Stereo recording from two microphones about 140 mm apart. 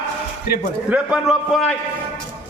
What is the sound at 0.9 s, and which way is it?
Speech, 10° right (ahead or behind).